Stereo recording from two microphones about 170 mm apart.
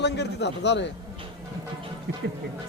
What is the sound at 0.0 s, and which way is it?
Speech, 90° left.